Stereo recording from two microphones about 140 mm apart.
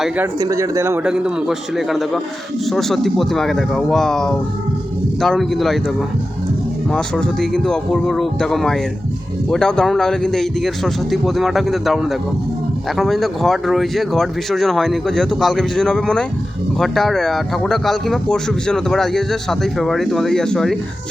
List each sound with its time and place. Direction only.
0.3 s speech: 25° right (ahead or behind)
1.0 s speech: 5° right (ahead or behind)
6.9 s speech: 5° left (ahead or behind)